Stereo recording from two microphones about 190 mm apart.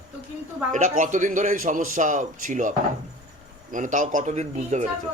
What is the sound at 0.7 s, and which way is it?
A man's voice, 45° right (ahead or behind).